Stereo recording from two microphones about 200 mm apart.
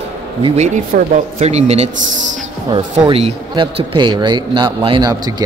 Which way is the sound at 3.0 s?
30° right (ahead or behind).